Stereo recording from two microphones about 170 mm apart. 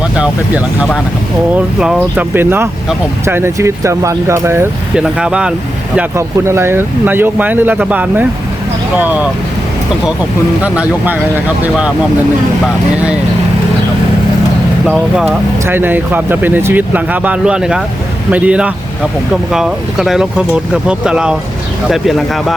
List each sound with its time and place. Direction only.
0.2 s speech: 5° right (ahead or behind)
10.6 s speech: 10° right (ahead or behind)
14.8 s speech: 5° right (ahead or behind)